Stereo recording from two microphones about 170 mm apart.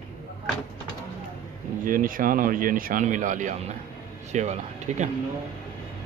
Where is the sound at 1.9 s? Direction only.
55° right (ahead or behind).